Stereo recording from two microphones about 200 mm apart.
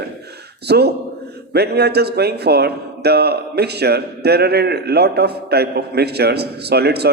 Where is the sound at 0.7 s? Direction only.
55° right (ahead or behind).